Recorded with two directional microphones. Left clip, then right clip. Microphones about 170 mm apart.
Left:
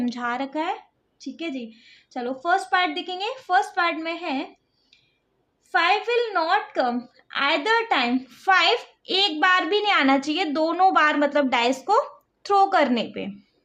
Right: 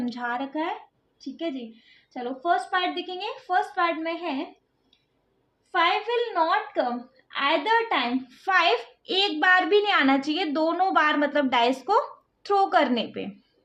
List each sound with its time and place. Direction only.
0.0 s a woman's voice: 20° left (ahead or behind)
2.1 s a woman's voice: 35° left (ahead or behind)
5.8 s a woman's voice: 40° left (ahead or behind); by 13.3 s 15° left (ahead or behind)